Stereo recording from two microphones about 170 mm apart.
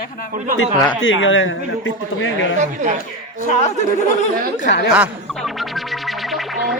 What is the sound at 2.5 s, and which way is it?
Speech, 45° right (ahead or behind).